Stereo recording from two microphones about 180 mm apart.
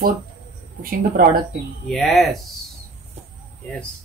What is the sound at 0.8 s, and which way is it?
Speech, 55° right (ahead or behind).